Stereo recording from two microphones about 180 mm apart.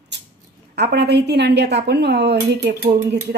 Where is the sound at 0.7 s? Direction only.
65° right (ahead or behind).